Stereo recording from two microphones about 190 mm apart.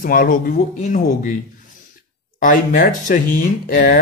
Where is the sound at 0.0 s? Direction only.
45° left (ahead or behind).